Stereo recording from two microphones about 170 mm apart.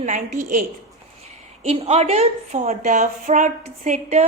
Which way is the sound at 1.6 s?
40° right (ahead or behind).